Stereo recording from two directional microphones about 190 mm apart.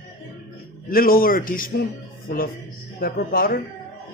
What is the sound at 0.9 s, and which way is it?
Speech, 50° left (ahead or behind).